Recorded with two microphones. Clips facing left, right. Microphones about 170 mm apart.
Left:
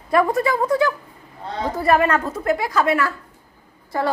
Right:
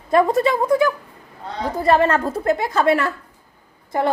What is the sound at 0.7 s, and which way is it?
Speech, 10° right (ahead or behind).